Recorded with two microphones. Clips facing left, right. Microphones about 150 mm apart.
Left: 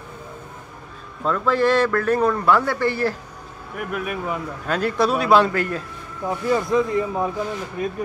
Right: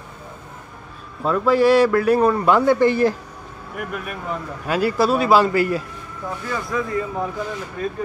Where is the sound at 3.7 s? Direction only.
Centre (ahead or behind).